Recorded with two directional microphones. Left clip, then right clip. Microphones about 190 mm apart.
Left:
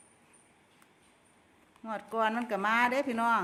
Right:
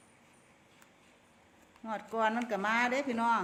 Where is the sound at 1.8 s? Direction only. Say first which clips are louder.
Left 1 dB; 20° left (ahead or behind).